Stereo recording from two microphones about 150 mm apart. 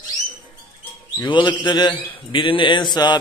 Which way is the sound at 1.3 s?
30° left (ahead or behind).